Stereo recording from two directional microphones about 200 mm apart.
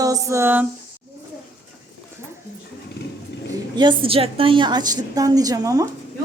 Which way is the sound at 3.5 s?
20° right (ahead or behind).